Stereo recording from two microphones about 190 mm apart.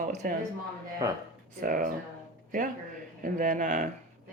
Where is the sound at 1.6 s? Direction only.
45° right (ahead or behind).